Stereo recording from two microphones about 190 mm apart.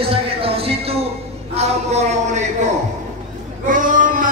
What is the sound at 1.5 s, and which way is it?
Speech, 35° right (ahead or behind).